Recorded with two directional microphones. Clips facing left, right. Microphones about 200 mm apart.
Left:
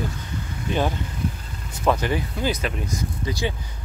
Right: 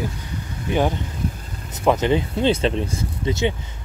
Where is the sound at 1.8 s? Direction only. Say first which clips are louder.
Right 4 dB; 20° right (ahead or behind).